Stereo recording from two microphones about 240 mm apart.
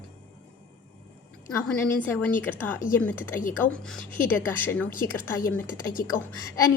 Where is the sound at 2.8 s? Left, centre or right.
Left.